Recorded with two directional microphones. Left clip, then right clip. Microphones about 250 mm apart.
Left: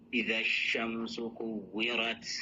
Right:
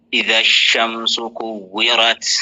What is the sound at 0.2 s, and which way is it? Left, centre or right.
Speech, right.